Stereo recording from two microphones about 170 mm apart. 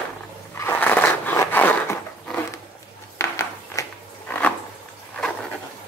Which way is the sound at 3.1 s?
15° left (ahead or behind).